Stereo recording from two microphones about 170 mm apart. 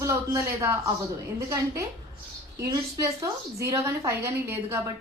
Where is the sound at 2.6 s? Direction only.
20° right (ahead or behind).